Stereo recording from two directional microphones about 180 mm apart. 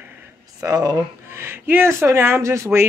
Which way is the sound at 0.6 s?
20° right (ahead or behind).